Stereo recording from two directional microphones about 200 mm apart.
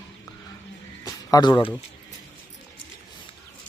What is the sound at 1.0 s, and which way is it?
Music, 20° left (ahead or behind).